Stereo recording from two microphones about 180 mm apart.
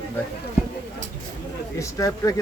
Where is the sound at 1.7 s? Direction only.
20° left (ahead or behind).